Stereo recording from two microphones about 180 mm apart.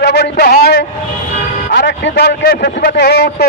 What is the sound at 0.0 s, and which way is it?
Speech, 65° left (ahead or behind).